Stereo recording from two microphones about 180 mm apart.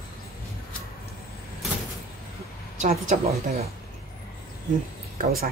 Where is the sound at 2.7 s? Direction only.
40° right (ahead or behind).